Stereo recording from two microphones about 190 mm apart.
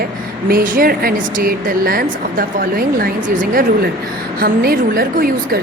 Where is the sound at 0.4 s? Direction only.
50° right (ahead or behind).